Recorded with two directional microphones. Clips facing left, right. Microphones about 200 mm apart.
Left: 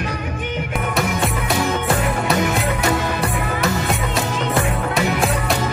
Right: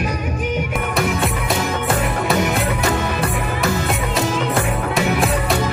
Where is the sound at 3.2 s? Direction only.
Centre (ahead or behind).